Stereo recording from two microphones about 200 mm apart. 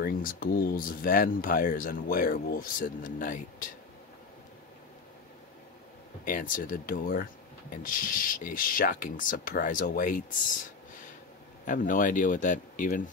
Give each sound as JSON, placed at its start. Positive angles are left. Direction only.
{"t": 0.0, "sound": "speech", "side_deg": 45}
{"t": 6.2, "sound": "speech", "side_deg": 45}
{"t": 11.6, "sound": "speech", "side_deg": 40}